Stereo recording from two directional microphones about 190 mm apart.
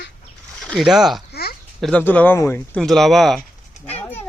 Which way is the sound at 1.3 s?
55° left (ahead or behind).